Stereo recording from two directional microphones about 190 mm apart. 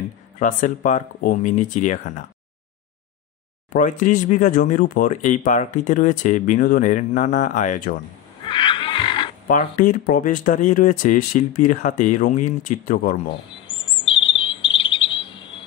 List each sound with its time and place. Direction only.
0.4 s speech: 40° left (ahead or behind)
3.7 s speech: 45° left (ahead or behind)
8.5 s pig: 25° left (ahead or behind)
9.5 s speech: 45° left (ahead or behind)
14.0 s chirp: 25° left (ahead or behind)